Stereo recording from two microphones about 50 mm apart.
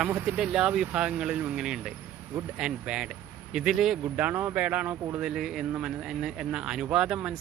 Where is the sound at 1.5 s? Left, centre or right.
Centre.